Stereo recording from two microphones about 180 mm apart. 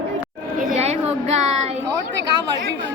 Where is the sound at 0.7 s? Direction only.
35° right (ahead or behind).